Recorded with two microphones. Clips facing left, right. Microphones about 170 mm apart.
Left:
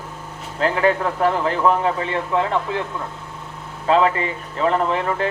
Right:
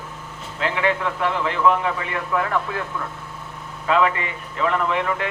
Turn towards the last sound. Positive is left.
turn(degrees=35)  # may be behind; listen again after turning